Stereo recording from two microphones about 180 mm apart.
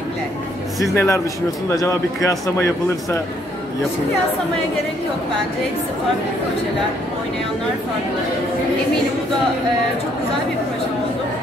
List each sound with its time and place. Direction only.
0.9 s speech: 15° left (ahead or behind)
2.2 s speech: 15° left (ahead or behind)